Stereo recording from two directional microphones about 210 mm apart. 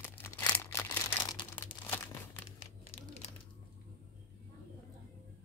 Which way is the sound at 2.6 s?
25° left (ahead or behind).